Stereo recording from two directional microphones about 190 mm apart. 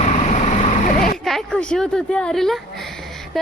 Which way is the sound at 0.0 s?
35° left (ahead or behind).